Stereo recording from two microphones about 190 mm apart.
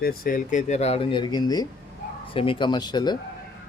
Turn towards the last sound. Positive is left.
turn(degrees=20)  # may be behind; listen again after turning